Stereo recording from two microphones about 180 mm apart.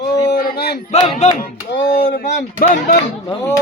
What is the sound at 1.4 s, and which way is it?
Speech, 55° left (ahead or behind).